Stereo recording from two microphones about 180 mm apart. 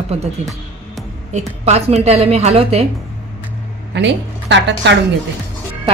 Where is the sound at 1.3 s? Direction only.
40° right (ahead or behind).